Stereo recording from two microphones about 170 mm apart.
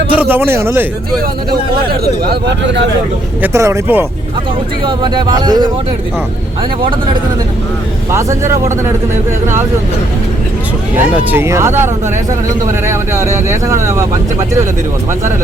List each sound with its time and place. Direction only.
0.1 s speech: 10° right (ahead or behind)
1.5 s speech: 65° right (ahead or behind)
3.4 s speech: 15° right (ahead or behind)
4.9 s speech: 25° right (ahead or behind)
8.1 s speech: 15° right (ahead or behind)
11.1 s speech: 10° right (ahead or behind)
12.9 s speech: 15° right (ahead or behind)